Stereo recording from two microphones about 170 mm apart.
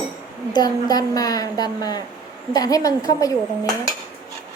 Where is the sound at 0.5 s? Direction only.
25° left (ahead or behind).